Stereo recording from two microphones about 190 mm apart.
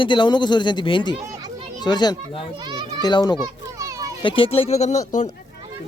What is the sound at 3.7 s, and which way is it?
Children playing, 20° right (ahead or behind).